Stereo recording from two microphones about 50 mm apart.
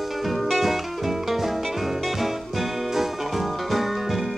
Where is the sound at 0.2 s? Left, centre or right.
Centre.